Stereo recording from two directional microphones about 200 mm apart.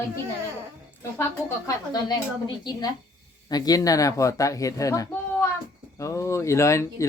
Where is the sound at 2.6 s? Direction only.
20° left (ahead or behind).